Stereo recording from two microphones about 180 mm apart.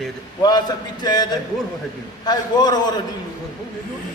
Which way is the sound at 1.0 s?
20° left (ahead or behind).